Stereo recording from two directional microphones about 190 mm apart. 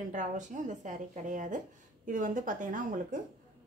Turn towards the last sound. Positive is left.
turn(degrees=-45)  # may be behind; listen again after turning